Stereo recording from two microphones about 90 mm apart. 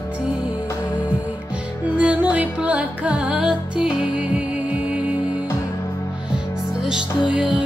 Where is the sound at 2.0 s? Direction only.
15° right (ahead or behind).